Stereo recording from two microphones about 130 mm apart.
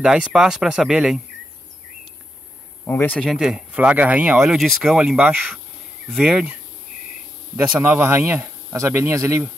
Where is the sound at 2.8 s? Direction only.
15° left (ahead or behind).